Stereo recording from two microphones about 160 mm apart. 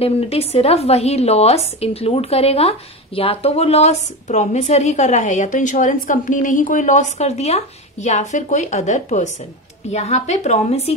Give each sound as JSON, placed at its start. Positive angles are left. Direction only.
{"t": 0.0, "sound": "a woman's voice", "side_deg": 40}